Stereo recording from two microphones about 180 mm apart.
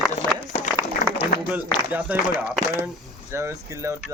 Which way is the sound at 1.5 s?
10° right (ahead or behind).